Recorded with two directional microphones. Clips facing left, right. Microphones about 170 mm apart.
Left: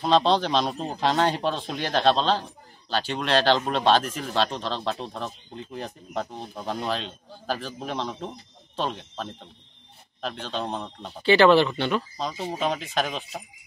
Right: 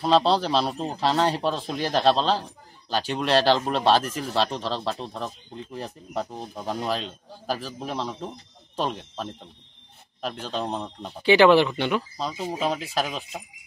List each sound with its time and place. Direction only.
0.0 s speech: 5° right (ahead or behind)
12.2 s speech: 5° right (ahead or behind)